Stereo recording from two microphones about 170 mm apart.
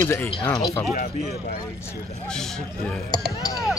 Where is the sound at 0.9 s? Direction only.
60° left (ahead or behind).